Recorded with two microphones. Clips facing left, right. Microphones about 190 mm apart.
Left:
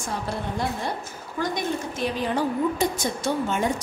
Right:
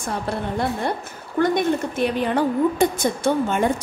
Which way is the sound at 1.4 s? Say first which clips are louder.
Right 8 dB; 60° right (ahead or behind).